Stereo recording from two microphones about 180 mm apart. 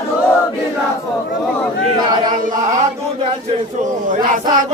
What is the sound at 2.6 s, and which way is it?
Chant, 40° right (ahead or behind).